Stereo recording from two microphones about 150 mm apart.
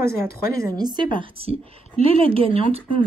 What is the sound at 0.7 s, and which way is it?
Speech, 30° right (ahead or behind).